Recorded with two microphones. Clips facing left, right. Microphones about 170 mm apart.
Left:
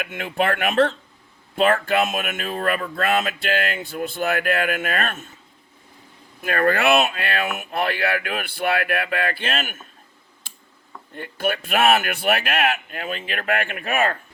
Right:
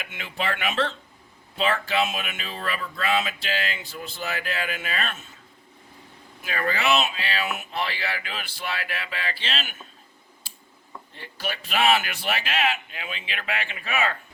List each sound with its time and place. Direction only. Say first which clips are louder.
0.0 s speech: left 8 dB; 55° left (ahead or behind)
6.4 s speech: left 7 dB; 55° left (ahead or behind)
11.1 s speech: left 9 dB; 55° left (ahead or behind)